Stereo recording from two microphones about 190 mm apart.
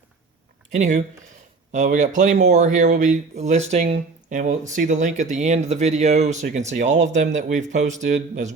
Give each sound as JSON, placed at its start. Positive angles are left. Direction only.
{"t": 0.7, "sound": "speech", "side_deg": -40}